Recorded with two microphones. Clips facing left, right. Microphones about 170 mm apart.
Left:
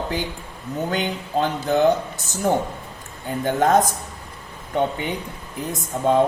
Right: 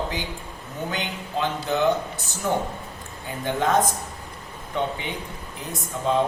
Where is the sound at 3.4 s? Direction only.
45° left (ahead or behind).